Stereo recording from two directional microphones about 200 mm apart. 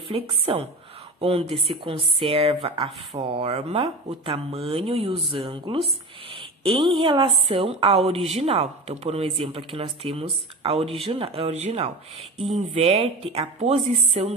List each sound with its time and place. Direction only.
0.1 s a woman's voice: 30° right (ahead or behind)